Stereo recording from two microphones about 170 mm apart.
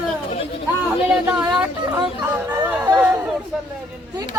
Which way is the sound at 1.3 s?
5° right (ahead or behind).